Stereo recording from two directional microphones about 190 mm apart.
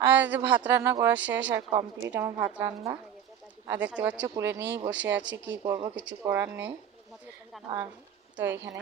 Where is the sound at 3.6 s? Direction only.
10° right (ahead or behind).